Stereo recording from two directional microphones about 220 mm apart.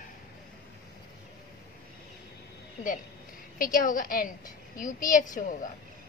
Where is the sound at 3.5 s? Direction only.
40° left (ahead or behind).